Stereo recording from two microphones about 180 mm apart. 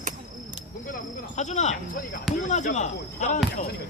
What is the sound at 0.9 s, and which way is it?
Sheep, 40° left (ahead or behind).